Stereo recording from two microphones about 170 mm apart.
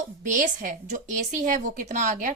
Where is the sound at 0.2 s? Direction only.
50° right (ahead or behind).